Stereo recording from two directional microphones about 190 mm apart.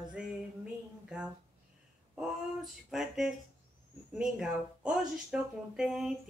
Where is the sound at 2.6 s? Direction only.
Centre (ahead or behind).